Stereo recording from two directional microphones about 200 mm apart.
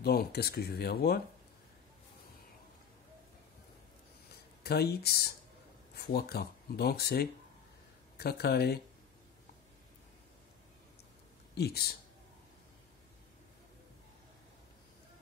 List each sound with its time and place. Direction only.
0.0 s speech: 50° left (ahead or behind)
4.6 s speech: 50° left (ahead or behind)
11.5 s speech: 50° left (ahead or behind)